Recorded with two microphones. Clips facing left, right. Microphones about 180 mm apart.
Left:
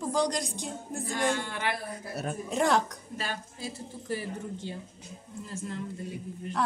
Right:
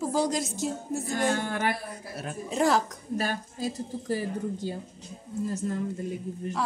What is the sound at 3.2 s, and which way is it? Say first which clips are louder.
A woman's voice: right 5 dB; 45° right (ahead or behind).